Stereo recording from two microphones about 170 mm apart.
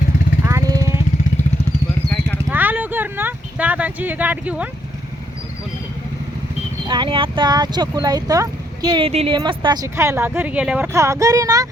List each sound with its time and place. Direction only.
0.4 s vehicle: 20° right (ahead or behind)
2.5 s a sound: 10° right (ahead or behind)
6.8 s speech: 25° right (ahead or behind); by 10.8 s 5° right (ahead or behind)
10.9 s speech: 20° right (ahead or behind)